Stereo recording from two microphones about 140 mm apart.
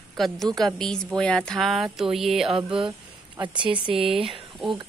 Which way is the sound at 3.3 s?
35° right (ahead or behind).